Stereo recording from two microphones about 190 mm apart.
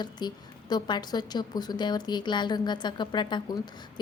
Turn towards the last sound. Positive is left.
turn(degrees=25)  # may be behind; listen again after turning